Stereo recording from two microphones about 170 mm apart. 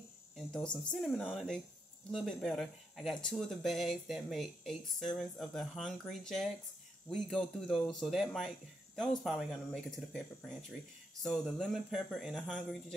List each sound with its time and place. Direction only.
0.4 s a sound: 5° left (ahead or behind)
0.9 s speech: centre (ahead or behind)
11.2 s speech: centre (ahead or behind)